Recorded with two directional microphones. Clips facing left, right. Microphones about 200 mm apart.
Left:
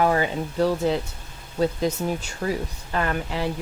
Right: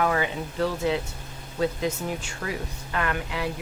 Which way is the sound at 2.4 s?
35° left (ahead or behind).